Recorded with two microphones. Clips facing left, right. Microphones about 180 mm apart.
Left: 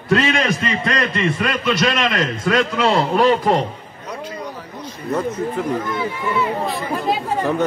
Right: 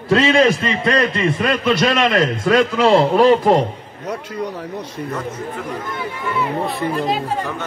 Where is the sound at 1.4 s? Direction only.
35° right (ahead or behind).